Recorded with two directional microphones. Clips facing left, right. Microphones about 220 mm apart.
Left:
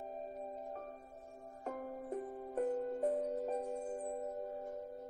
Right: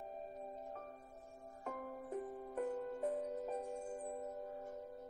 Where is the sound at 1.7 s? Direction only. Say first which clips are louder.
Left 3 dB; 35° left (ahead or behind).